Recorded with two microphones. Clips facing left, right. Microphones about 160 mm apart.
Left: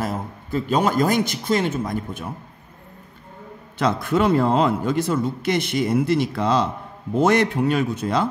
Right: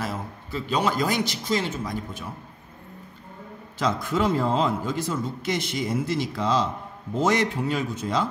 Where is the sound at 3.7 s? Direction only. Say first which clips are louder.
Left 4 dB; 60° left (ahead or behind).